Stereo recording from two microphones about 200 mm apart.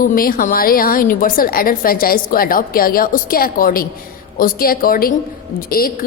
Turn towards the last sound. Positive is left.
turn(degrees=45)  # may be behind; listen again after turning